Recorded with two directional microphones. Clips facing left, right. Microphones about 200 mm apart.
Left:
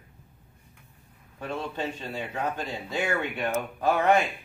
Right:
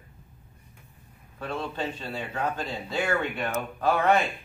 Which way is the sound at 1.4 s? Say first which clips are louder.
Even; 15° left (ahead or behind).